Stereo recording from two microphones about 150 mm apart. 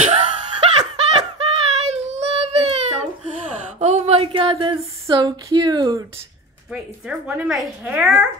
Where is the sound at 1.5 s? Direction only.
45° right (ahead or behind).